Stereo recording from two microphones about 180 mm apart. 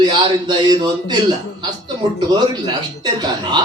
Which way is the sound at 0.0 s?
25° right (ahead or behind).